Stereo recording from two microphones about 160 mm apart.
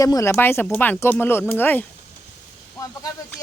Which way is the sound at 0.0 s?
20° left (ahead or behind).